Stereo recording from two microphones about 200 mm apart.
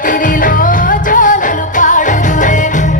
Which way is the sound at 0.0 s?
40° left (ahead or behind).